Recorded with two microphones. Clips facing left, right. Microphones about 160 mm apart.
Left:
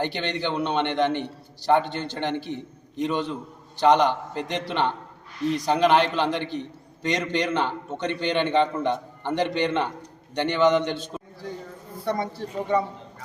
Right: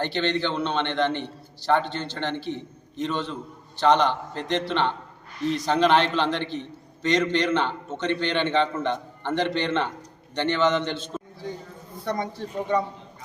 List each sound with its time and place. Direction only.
0.0 s a man's voice: 10° left (ahead or behind)